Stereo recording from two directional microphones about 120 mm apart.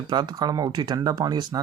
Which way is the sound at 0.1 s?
35° right (ahead or behind).